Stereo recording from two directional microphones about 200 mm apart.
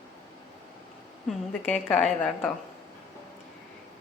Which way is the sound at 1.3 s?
5° left (ahead or behind).